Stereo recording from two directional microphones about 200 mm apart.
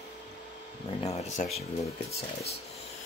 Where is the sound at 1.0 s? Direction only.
35° left (ahead or behind).